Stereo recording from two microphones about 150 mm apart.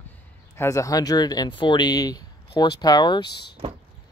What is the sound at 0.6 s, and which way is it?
Speech, 20° left (ahead or behind).